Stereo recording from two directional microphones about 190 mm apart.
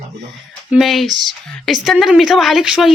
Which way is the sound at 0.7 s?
Centre (ahead or behind).